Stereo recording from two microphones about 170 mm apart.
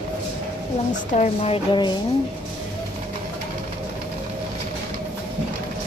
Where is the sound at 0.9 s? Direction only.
45° left (ahead or behind); by 1.9 s 30° left (ahead or behind).